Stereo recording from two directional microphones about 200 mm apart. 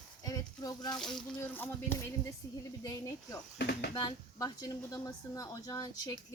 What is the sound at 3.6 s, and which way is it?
Speech, 55° left (ahead or behind).